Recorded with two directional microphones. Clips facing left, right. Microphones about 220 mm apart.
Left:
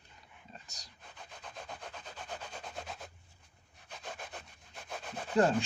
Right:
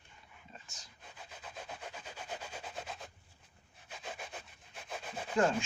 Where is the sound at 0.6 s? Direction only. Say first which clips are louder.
Left 1 dB; 40° left (ahead or behind).